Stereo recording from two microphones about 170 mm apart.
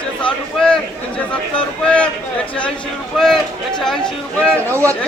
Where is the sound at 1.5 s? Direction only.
5° left (ahead or behind).